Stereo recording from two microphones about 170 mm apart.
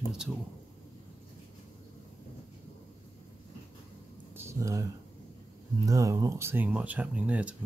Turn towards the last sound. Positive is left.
turn(degrees=-10)  # may be behind; listen again after turning